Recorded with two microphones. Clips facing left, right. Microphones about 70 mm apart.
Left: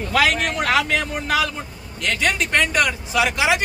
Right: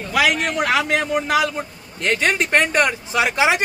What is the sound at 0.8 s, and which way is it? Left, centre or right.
A man's voice, right.